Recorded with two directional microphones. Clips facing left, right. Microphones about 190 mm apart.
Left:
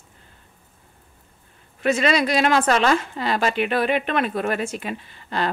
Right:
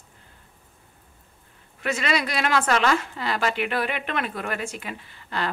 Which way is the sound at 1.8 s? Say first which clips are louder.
Left 6 dB; 30° left (ahead or behind).